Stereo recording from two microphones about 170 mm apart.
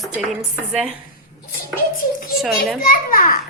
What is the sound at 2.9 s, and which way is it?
Speech, 55° left (ahead or behind).